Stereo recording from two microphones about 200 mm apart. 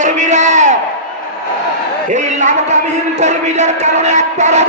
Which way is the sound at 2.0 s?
35° right (ahead or behind).